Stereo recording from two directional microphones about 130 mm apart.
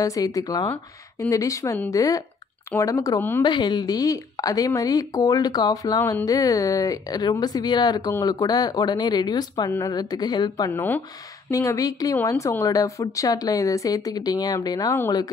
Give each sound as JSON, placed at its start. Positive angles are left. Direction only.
{"t": 0.0, "sound": "speech", "side_deg": 25}
{"t": 3.4, "sound": "speech", "side_deg": 35}
{"t": 10.7, "sound": "speech", "side_deg": 15}
{"t": 11.5, "sound": "speech", "side_deg": 25}